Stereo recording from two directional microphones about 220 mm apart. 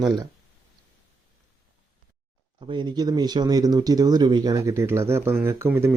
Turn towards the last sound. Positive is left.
turn(degrees=-10)  # may be behind; listen again after turning